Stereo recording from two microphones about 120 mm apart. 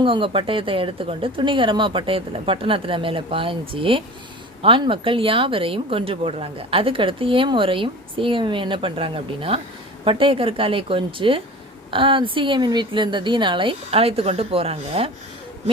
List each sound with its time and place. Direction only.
0.0 s a woman's voice: 45° right (ahead or behind)